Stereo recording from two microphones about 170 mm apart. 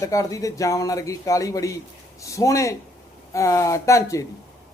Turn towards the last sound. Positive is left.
turn(degrees=15)  # may be behind; listen again after turning